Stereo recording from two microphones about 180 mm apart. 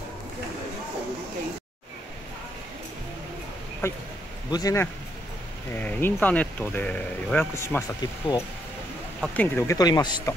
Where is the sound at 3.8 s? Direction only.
15° left (ahead or behind).